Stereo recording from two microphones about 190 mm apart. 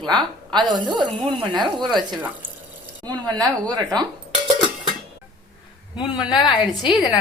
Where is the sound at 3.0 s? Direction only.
20° right (ahead or behind).